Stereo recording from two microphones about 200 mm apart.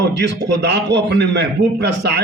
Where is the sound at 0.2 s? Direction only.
60° right (ahead or behind).